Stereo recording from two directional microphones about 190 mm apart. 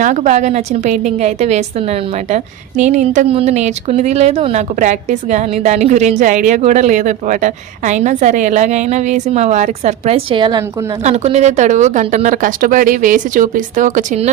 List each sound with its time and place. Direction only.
0.0 s a woman's voice: 40° right (ahead or behind)
11.0 s a woman's voice: 35° right (ahead or behind)